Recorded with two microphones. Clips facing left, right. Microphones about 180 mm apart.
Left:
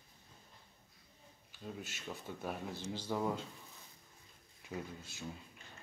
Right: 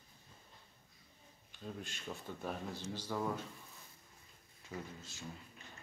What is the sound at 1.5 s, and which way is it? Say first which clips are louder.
Speech: even; 5° left (ahead or behind).